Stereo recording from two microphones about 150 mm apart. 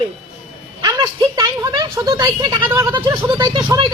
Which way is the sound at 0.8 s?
30° right (ahead or behind).